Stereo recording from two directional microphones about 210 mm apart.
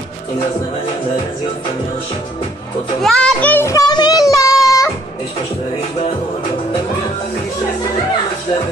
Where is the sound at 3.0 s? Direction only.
Centre (ahead or behind).